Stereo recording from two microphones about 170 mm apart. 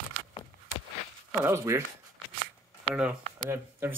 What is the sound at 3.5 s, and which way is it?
Speech, 10° right (ahead or behind).